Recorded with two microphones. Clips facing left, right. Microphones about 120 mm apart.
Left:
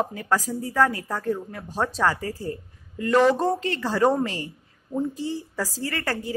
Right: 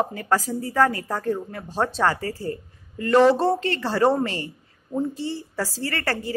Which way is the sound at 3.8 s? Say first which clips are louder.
Right 1 dB; 5° right (ahead or behind).